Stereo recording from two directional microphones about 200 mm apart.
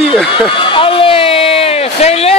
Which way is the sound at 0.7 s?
25° left (ahead or behind).